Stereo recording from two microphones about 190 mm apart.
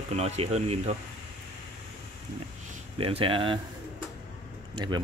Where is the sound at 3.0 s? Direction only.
30° right (ahead or behind).